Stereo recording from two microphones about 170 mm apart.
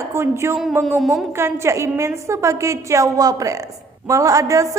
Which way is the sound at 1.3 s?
15° right (ahead or behind).